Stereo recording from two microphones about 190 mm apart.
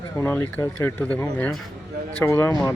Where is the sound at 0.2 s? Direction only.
15° left (ahead or behind).